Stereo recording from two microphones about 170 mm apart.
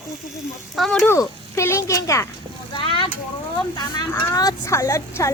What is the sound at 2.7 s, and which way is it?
Speech, 30° left (ahead or behind).